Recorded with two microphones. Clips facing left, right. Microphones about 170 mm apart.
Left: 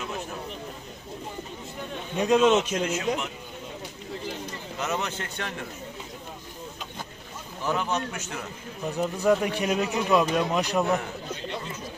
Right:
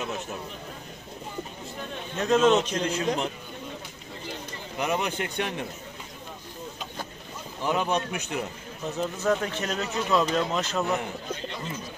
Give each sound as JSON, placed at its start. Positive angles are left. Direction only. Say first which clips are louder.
{"t": 2.1, "sound": "speech", "louder": "left 1 dB", "side_deg": 15}
{"t": 4.7, "sound": "speech", "louder": "right 3 dB", "side_deg": -15}
{"t": 7.6, "sound": "speech", "louder": "right 2 dB", "side_deg": -15}
{"t": 8.9, "sound": "speech", "louder": "left 3 dB", "side_deg": 15}